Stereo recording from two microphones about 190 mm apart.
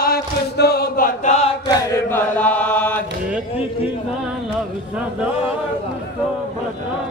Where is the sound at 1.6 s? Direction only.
10° left (ahead or behind).